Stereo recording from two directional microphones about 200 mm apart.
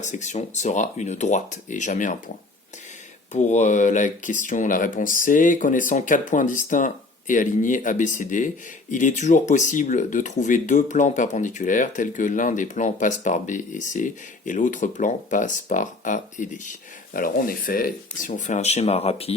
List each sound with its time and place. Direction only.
0.0 s speech: 35° left (ahead or behind)
3.3 s speech: 35° left (ahead or behind)